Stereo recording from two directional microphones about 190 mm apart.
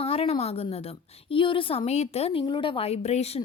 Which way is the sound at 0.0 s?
30° left (ahead or behind).